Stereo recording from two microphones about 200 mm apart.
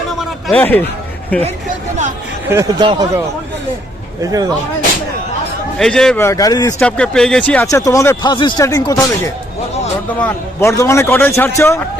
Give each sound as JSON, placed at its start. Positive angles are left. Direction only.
{"t": 0.2, "sound": "a sound", "side_deg": 5}
{"t": 1.3, "sound": "speech", "side_deg": 5}
{"t": 2.5, "sound": "speech", "side_deg": -15}
{"t": 5.8, "sound": "speech", "side_deg": 0}
{"t": 6.2, "sound": "speech", "side_deg": 15}
{"t": 6.8, "sound": "speech", "side_deg": 5}